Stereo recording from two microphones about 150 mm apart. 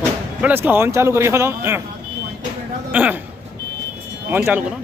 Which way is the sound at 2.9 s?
10° right (ahead or behind).